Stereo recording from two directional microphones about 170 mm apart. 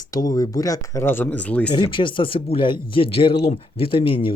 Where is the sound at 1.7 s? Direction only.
30° left (ahead or behind).